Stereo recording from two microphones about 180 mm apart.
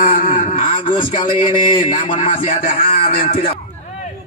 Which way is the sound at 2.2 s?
50° left (ahead or behind).